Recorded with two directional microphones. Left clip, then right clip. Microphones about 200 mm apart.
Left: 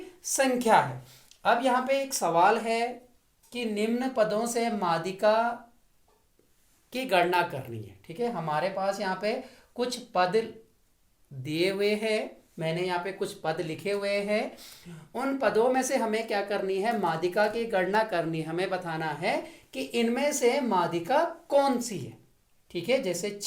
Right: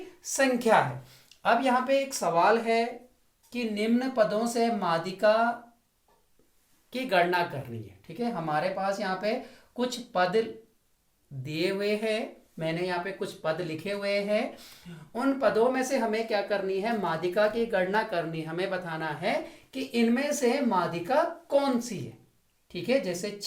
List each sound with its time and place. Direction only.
0.2 s a woman's voice: 45° left (ahead or behind)
3.5 s speech: 40° left (ahead or behind)
6.9 s speech: 40° left (ahead or behind)
11.4 s speech: 40° left (ahead or behind)
15.1 s a woman's voice: 45° left (ahead or behind)
17.0 s speech: 35° left (ahead or behind)